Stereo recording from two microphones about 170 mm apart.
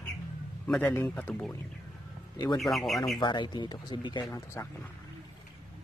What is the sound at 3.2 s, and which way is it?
Speech, 25° left (ahead or behind).